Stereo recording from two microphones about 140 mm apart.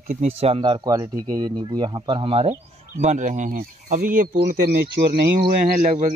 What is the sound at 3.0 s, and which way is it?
Speech, 60° right (ahead or behind).